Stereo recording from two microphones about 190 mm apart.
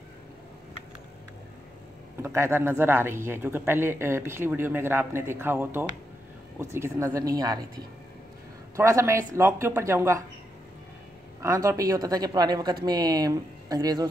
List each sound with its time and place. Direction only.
2.2 s speech: 15° right (ahead or behind)
8.7 s speech: 15° right (ahead or behind)
11.4 s speech: 15° right (ahead or behind)